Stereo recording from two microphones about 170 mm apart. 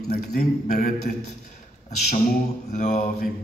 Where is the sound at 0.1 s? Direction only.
50° left (ahead or behind).